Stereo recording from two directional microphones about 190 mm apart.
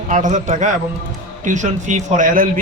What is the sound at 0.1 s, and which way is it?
Speech, 40° right (ahead or behind).